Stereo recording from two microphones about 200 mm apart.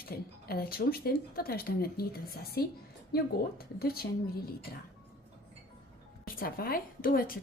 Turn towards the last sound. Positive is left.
turn(degrees=45)  # may be behind; listen again after turning